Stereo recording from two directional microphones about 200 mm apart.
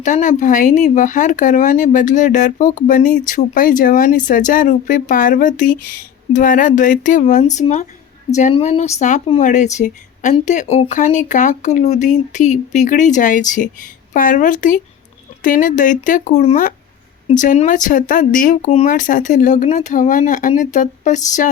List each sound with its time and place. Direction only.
0.0 s speech: 40° left (ahead or behind)